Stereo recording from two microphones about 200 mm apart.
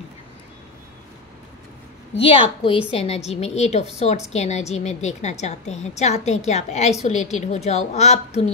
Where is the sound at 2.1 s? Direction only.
30° left (ahead or behind).